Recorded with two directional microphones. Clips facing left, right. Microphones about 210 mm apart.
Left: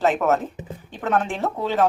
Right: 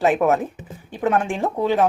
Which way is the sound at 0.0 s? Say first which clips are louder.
Right 2 dB; 10° right (ahead or behind).